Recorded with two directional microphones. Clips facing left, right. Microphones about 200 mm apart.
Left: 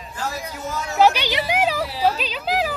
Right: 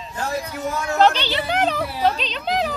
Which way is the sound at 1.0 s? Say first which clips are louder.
Left 1 dB; 10° left (ahead or behind).